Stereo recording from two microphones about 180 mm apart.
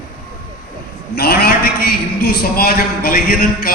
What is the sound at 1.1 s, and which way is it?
A man's voice, 60° left (ahead or behind).